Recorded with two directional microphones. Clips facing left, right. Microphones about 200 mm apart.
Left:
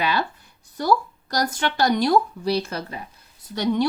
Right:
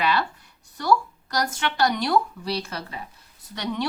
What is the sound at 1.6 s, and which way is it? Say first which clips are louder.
Speech: left 3 dB; 35° left (ahead or behind).